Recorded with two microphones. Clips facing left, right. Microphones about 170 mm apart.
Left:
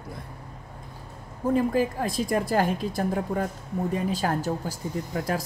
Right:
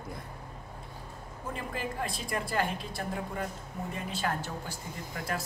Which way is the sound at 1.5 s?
40° left (ahead or behind).